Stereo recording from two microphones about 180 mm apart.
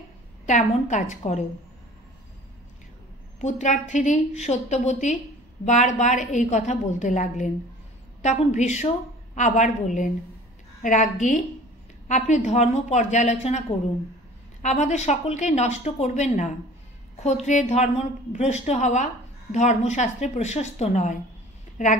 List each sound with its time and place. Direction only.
0.5 s a woman's voice: 40° left (ahead or behind)
3.3 s a woman's voice: 40° left (ahead or behind)